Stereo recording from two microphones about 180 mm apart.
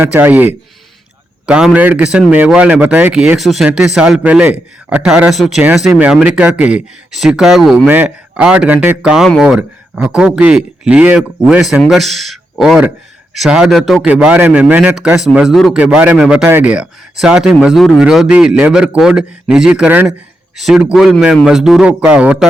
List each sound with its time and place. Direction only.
0.0 s speech: 10° right (ahead or behind)